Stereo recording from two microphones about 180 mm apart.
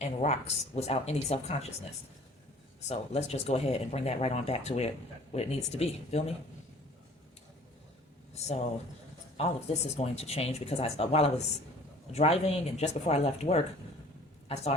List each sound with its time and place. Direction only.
0.0 s speech: 40° left (ahead or behind)
2.9 s speech: 35° left (ahead or behind)
8.4 s speech: 40° left (ahead or behind)